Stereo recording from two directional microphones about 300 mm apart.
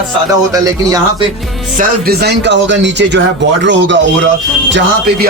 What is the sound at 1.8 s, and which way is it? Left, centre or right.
A man's voice, right.